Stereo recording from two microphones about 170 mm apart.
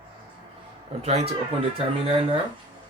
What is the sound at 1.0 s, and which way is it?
Speech, 35° right (ahead or behind).